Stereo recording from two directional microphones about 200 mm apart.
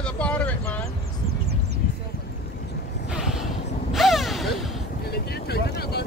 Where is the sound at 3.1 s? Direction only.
Centre (ahead or behind).